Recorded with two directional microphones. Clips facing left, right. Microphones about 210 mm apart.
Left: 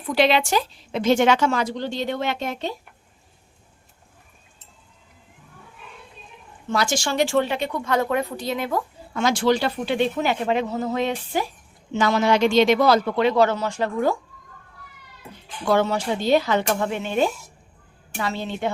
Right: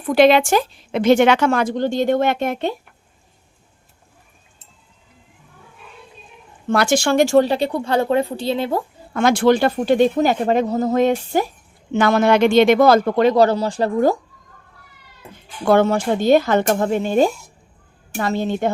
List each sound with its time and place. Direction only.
0.0 s a woman's voice: 50° right (ahead or behind)
6.7 s speech: 60° right (ahead or behind); by 8.8 s 30° right (ahead or behind)
9.1 s a woman's voice: 55° right (ahead or behind); by 14.2 s 35° right (ahead or behind)
15.6 s a woman's voice: 55° right (ahead or behind)